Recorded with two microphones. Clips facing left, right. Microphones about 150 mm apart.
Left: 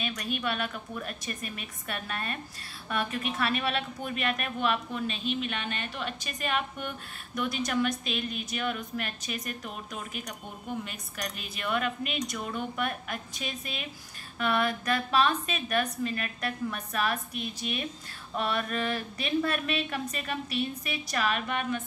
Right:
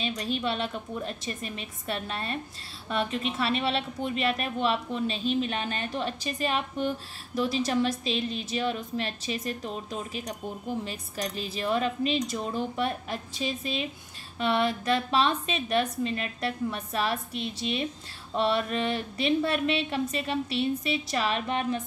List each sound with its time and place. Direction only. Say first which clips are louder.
0.0 s a woman's voice: right 3 dB; 30° right (ahead or behind)